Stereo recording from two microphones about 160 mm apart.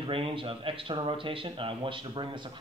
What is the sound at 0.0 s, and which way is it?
Speech, 35° right (ahead or behind).